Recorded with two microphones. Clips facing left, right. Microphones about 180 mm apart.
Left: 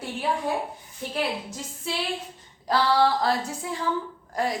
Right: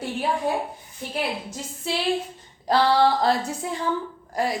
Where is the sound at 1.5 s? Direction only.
30° right (ahead or behind).